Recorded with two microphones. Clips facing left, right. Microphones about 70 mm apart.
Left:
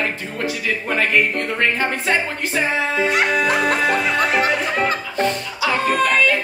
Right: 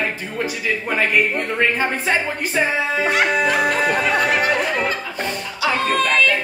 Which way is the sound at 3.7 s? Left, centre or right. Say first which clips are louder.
Even; centre.